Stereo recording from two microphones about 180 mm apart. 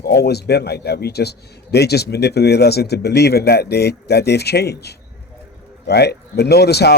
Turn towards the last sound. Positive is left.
turn(degrees=65)  # may be behind; listen again after turning